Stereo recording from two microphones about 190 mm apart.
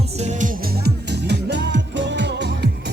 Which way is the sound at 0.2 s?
40° right (ahead or behind).